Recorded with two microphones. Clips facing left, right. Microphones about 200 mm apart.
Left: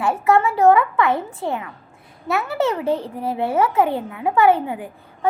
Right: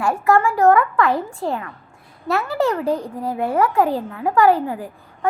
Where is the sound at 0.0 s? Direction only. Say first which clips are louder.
Even; 20° left (ahead or behind).